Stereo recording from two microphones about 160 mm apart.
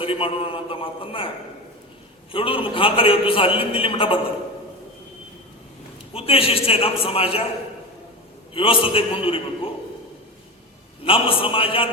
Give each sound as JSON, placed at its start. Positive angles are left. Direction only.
{"t": 0.0, "sound": "a man's voice", "side_deg": 35}
{"t": 2.3, "sound": "a man's voice", "side_deg": 35}
{"t": 6.1, "sound": "a man's voice", "side_deg": 35}
{"t": 8.5, "sound": "a man's voice", "side_deg": 35}
{"t": 11.0, "sound": "a man's voice", "side_deg": 35}